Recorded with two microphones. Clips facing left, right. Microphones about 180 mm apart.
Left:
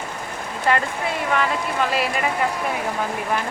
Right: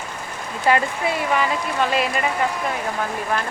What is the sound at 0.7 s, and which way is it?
Speech, 5° right (ahead or behind).